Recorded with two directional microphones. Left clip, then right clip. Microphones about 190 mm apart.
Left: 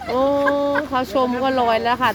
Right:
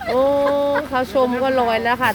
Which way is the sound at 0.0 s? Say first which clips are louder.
Right 1 dB; centre (ahead or behind).